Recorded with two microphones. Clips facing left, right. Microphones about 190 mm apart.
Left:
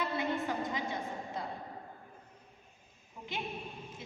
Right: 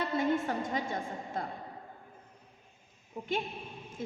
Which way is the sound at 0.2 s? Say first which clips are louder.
Right 4 dB; 45° right (ahead or behind).